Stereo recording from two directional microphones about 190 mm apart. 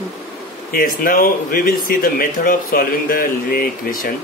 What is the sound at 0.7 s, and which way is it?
Speech, 50° left (ahead or behind).